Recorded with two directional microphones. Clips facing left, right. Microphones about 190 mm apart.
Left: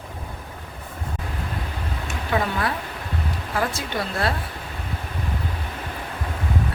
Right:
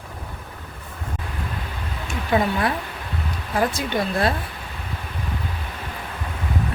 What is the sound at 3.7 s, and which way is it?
Speech, 15° right (ahead or behind).